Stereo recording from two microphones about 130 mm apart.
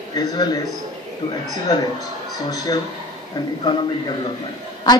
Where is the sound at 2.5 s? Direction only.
30° left (ahead or behind).